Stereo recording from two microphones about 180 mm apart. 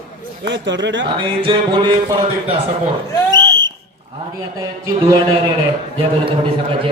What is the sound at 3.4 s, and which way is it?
Fire alarm, 90° right.